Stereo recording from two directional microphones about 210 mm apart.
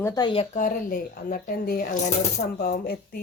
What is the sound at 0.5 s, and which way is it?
A woman's voice, 40° left (ahead or behind).